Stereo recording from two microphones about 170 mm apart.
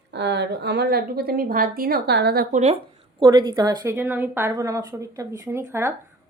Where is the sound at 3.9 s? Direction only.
10° right (ahead or behind).